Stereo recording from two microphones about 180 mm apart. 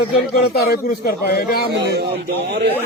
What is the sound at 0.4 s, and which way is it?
Speech, 60° left (ahead or behind).